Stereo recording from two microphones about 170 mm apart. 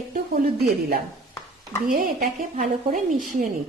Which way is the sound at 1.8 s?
55° right (ahead or behind).